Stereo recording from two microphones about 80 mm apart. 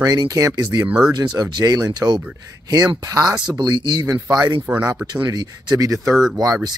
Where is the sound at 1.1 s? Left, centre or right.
Right.